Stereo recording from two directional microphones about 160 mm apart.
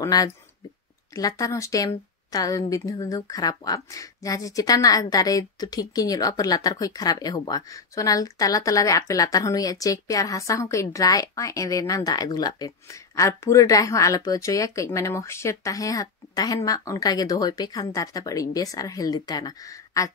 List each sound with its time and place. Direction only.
0.0 s a woman's voice: 20° left (ahead or behind)